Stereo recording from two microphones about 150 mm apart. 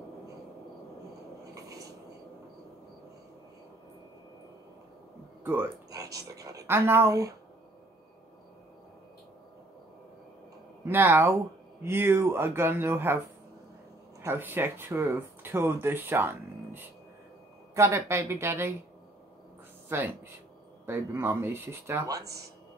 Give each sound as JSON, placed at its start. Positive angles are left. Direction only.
{"t": 1.5, "sound": "a sound", "side_deg": -25}
{"t": 5.4, "sound": "speech", "side_deg": -15}
{"t": 10.9, "sound": "speech", "side_deg": -15}
{"t": 14.2, "sound": "speech", "side_deg": -15}
{"t": 19.9, "sound": "speech", "side_deg": -15}